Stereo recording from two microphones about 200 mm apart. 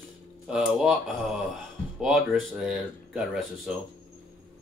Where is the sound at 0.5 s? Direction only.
5° right (ahead or behind).